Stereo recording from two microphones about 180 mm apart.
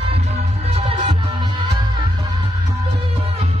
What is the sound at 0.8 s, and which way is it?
Music, 30° right (ahead or behind).